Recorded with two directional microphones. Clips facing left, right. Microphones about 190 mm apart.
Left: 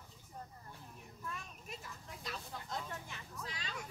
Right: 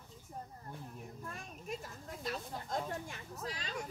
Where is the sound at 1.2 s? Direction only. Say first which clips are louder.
Left 1 dB; 45° right (ahead or behind).